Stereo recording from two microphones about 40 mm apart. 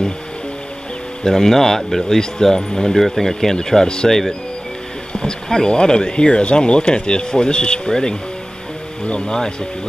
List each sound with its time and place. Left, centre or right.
1.2 s speech: centre
5.2 s speech: centre
9.0 s speech: left